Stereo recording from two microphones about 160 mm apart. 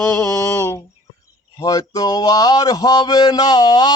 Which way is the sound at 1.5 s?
20° left (ahead or behind).